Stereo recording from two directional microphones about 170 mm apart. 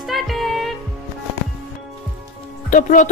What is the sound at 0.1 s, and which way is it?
Music, centre (ahead or behind).